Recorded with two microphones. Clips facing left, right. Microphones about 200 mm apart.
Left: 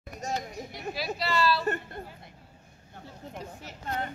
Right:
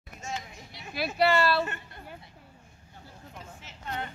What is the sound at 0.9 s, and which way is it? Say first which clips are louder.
Speech: right 6 dB; 60° right (ahead or behind).